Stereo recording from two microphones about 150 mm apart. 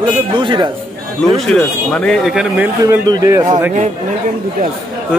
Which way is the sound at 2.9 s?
25° right (ahead or behind).